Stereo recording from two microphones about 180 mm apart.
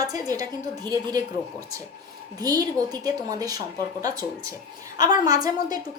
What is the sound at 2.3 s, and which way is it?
A woman's voice, 20° right (ahead or behind).